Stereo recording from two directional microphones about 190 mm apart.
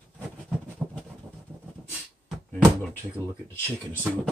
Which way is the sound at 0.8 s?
5° right (ahead or behind).